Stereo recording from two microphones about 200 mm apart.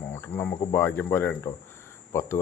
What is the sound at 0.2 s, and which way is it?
Speech, 10° left (ahead or behind).